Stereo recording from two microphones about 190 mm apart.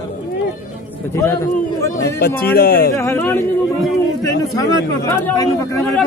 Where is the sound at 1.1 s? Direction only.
15° left (ahead or behind).